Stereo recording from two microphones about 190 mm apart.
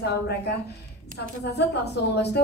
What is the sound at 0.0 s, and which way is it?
A woman's voice, 60° left (ahead or behind).